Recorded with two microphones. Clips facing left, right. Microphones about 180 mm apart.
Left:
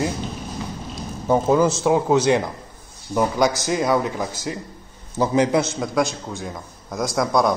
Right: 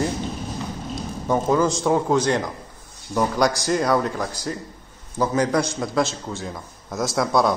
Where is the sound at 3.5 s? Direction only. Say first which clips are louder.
Even; 20° left (ahead or behind).